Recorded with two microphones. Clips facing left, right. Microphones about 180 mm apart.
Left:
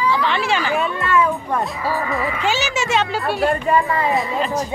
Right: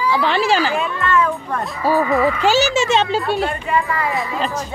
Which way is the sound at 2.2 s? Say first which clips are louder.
Right 6 dB; 35° right (ahead or behind).